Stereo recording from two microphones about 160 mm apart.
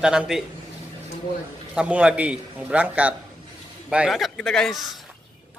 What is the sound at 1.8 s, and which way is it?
A man's voice, 5° right (ahead or behind).